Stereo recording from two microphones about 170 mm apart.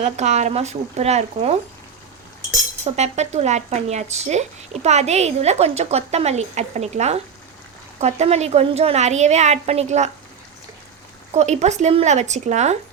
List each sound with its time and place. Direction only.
0.0 s speech: 40° right (ahead or behind)
2.8 s speech: 40° right (ahead or behind)
11.3 s speech: 40° right (ahead or behind)